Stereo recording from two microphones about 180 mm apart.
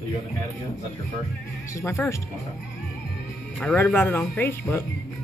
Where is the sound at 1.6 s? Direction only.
15° left (ahead or behind).